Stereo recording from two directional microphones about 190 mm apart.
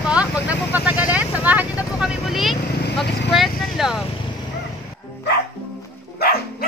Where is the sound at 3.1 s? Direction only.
65° left (ahead or behind).